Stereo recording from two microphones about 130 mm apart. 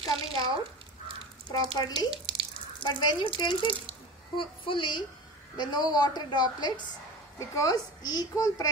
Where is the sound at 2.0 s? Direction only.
40° right (ahead or behind).